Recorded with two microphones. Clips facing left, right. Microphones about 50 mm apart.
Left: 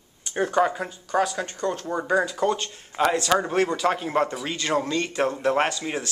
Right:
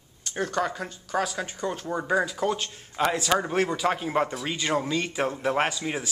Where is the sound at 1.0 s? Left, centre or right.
Centre.